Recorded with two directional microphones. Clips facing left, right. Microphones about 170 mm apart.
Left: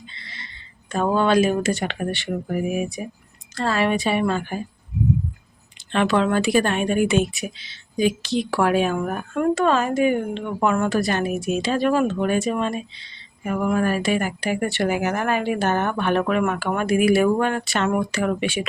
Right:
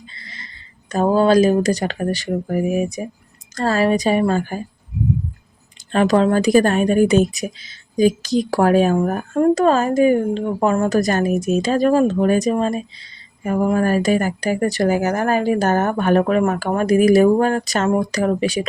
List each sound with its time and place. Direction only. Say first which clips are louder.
0.1 s a sound: right 2 dB; 30° left (ahead or behind)
0.9 s speech: right 5 dB; 40° right (ahead or behind)
5.9 s speech: right 4 dB; 40° right (ahead or behind)